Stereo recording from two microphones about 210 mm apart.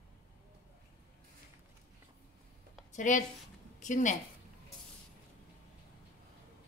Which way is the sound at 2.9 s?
35° left (ahead or behind).